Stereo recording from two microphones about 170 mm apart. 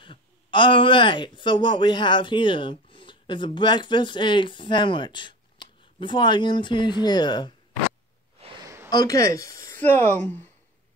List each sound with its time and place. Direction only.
0.0 s speech: 30° left (ahead or behind)
8.6 s a sound: 15° right (ahead or behind)
8.9 s speech: 20° left (ahead or behind)